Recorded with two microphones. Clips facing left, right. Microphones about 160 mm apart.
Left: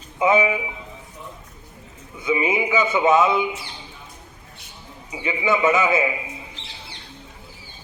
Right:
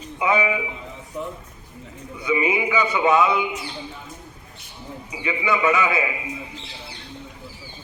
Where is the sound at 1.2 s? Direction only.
65° right (ahead or behind).